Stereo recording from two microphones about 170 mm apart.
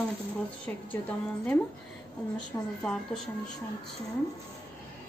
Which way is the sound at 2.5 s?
15° left (ahead or behind).